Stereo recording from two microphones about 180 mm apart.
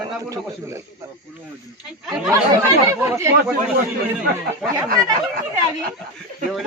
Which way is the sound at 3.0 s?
15° right (ahead or behind).